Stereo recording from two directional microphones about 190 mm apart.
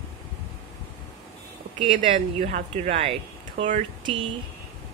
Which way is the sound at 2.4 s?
35° right (ahead or behind).